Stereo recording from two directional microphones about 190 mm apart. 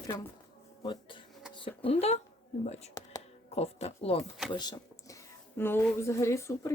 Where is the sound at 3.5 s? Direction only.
35° left (ahead or behind).